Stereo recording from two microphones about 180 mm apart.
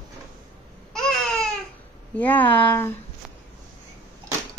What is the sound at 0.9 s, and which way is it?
Babbling, 5° left (ahead or behind).